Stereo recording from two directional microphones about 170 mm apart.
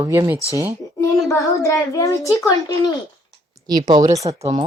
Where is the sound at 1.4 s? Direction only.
20° left (ahead or behind).